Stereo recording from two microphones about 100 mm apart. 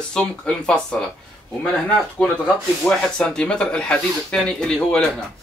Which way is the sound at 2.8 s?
10° left (ahead or behind).